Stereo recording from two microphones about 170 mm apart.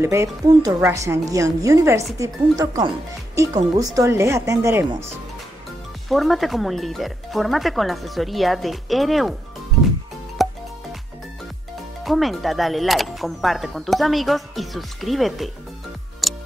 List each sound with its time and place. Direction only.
0.0 s speech: 15° right (ahead or behind)
6.0 s speech: centre (ahead or behind)
10.3 s music: centre (ahead or behind)
12.0 s speech: centre (ahead or behind)
16.2 s tick-tock: centre (ahead or behind)